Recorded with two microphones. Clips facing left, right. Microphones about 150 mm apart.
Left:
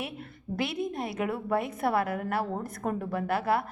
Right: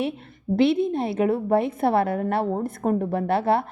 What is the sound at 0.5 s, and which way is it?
A woman's voice, 25° right (ahead or behind).